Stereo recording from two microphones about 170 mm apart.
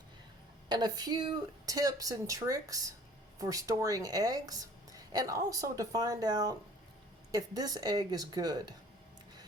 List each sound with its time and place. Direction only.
0.7 s a woman's voice: 25° right (ahead or behind)